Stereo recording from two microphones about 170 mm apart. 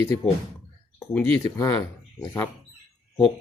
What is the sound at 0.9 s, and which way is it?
Speech, 15° left (ahead or behind).